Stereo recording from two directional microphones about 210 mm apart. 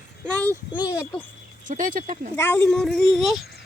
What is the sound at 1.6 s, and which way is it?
Speech, 40° right (ahead or behind).